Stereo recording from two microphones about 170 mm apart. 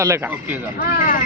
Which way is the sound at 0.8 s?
55° left (ahead or behind).